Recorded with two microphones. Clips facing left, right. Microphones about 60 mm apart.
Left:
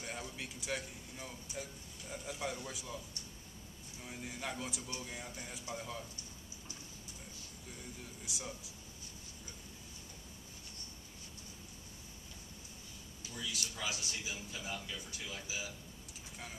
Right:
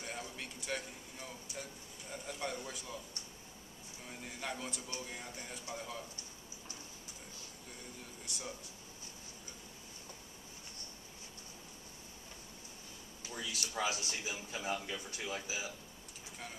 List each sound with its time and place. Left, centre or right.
0.0 s a sound: centre
1.5 s a man's voice: centre
4.0 s a man's voice: centre
13.3 s a man's voice: right